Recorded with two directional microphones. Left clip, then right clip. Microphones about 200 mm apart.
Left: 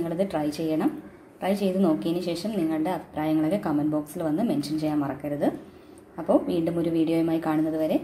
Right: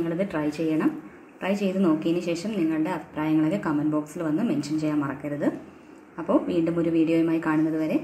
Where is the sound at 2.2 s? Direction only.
15° left (ahead or behind).